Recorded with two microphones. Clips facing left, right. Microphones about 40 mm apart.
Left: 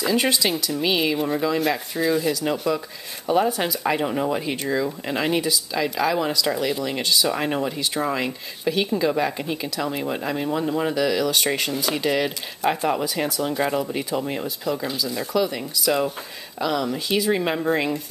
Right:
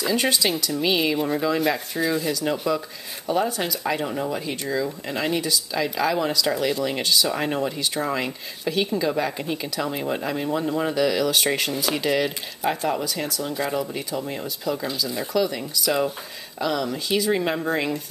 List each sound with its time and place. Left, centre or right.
0.0 s speech: centre
3.3 s speech: centre
13.2 s speech: left; by 18.0 s centre